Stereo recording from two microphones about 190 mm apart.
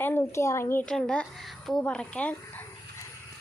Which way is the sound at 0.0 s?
10° left (ahead or behind).